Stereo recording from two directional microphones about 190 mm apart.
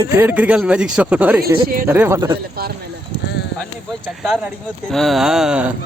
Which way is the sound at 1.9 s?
10° right (ahead or behind).